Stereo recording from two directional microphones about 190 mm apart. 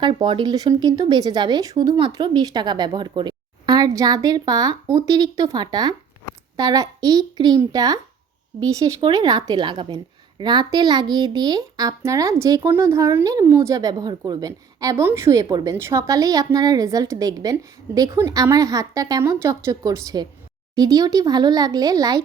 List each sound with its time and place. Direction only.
0.0 s a woman's voice: 25° right (ahead or behind)